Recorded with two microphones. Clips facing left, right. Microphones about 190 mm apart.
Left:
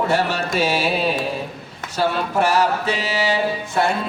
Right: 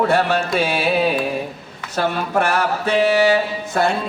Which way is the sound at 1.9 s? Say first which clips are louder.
Right 1 dB; 55° right (ahead or behind).